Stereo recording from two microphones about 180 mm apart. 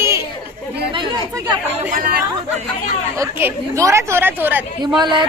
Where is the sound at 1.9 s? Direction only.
50° right (ahead or behind).